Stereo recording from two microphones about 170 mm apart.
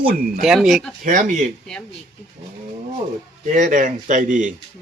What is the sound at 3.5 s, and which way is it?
Speech, 50° right (ahead or behind).